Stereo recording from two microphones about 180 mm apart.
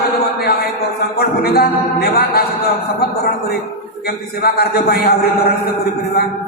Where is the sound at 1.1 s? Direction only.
60° left (ahead or behind).